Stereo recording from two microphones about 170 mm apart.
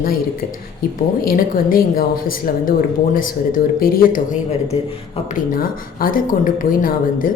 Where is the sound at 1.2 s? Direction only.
60° left (ahead or behind).